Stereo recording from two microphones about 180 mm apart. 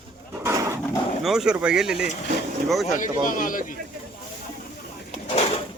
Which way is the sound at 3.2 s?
50° left (ahead or behind).